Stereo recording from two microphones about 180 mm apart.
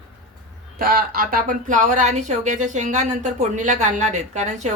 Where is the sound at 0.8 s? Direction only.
55° right (ahead or behind).